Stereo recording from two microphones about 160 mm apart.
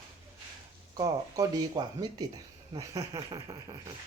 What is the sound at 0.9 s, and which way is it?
Speech, 25° right (ahead or behind).